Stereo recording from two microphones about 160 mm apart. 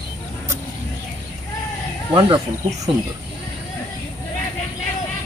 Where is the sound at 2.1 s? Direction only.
25° right (ahead or behind).